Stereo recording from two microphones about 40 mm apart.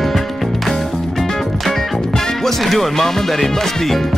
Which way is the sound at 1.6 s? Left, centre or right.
Centre.